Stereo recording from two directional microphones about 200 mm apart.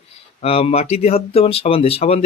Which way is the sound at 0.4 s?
30° left (ahead or behind).